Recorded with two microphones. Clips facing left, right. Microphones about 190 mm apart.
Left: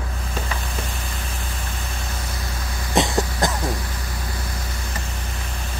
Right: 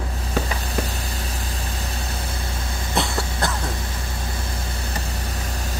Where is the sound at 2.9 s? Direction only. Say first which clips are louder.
Left 4 dB; 20° left (ahead or behind).